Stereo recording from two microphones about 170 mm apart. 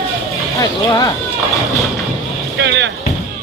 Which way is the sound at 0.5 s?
20° left (ahead or behind).